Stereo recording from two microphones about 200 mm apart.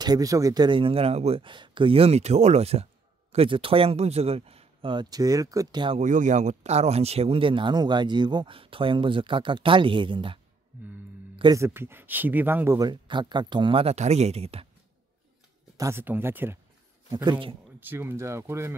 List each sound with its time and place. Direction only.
0.0 s speech: 20° right (ahead or behind)
5.9 s speech: 40° right (ahead or behind)
15.8 s speech: 10° right (ahead or behind)
17.1 s speech: 20° right (ahead or behind)
17.7 s speech: 10° right (ahead or behind)